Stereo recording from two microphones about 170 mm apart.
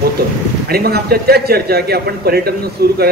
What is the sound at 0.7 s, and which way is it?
Speech, 65° right (ahead or behind).